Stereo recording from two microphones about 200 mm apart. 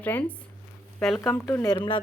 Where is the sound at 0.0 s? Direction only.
10° left (ahead or behind).